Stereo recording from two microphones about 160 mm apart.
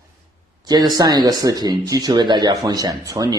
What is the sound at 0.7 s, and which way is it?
Speech, 25° right (ahead or behind).